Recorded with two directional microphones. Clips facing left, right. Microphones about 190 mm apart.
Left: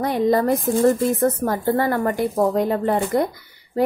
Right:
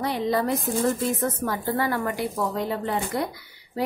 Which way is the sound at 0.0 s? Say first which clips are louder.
Left 6 dB; 50° left (ahead or behind).